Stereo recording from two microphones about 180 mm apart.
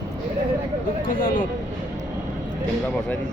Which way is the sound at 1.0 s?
50° left (ahead or behind).